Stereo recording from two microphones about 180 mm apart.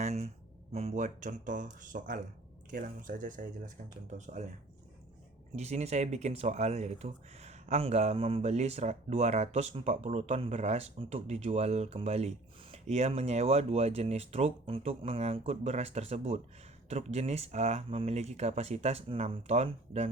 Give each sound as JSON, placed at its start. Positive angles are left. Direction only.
{"t": 0.0, "sound": "a sound", "side_deg": -35}
{"t": 0.7, "sound": "speech", "side_deg": -35}
{"t": 5.5, "sound": "speech", "side_deg": -40}